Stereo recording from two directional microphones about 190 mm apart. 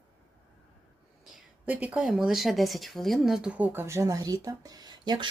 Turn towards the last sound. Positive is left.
turn(degrees=-20)  # may be behind; listen again after turning